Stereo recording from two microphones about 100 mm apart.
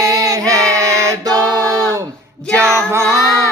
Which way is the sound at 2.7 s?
30° right (ahead or behind).